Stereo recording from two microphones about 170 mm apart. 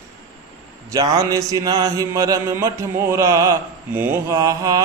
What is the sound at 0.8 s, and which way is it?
Mantra, 20° right (ahead or behind).